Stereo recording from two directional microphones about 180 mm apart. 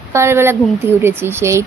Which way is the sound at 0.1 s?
15° right (ahead or behind).